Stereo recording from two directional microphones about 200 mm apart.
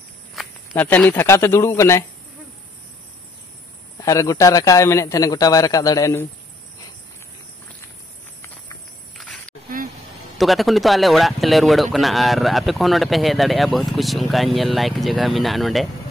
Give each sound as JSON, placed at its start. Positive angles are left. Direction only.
{"t": 0.3, "sound": "walk", "side_deg": 0}
{"t": 0.8, "sound": "a man's voice", "side_deg": 10}
{"t": 4.0, "sound": "a man's voice", "side_deg": 15}
{"t": 9.2, "sound": "a sound", "side_deg": 5}
{"t": 10.3, "sound": "speech", "side_deg": 0}